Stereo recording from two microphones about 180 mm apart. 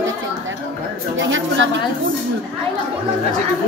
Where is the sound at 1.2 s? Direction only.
90° right.